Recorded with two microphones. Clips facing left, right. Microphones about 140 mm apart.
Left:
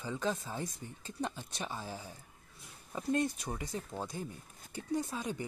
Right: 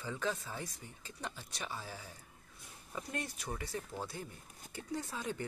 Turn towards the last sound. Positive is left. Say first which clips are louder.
# left 4 dB
turn(degrees=15)  # may be behind; listen again after turning